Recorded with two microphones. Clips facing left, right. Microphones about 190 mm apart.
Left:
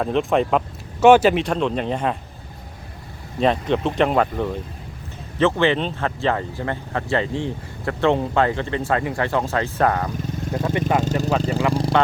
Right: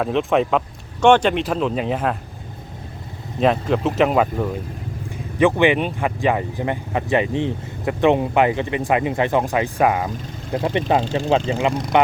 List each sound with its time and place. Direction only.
0.0 s speech: centre (ahead or behind)
3.4 s speech: 5° right (ahead or behind)
10.5 s speech: 25° right (ahead or behind)
11.0 s speech: 40° left (ahead or behind)
11.7 s speech: 30° left (ahead or behind)